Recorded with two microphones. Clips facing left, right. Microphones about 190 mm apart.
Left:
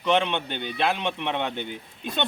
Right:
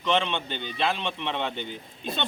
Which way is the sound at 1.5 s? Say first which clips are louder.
Left 2 dB; 60° left (ahead or behind).